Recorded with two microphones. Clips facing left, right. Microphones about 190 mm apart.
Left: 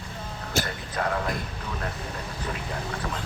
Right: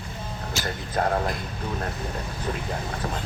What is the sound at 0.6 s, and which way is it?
Speech, 55° left (ahead or behind).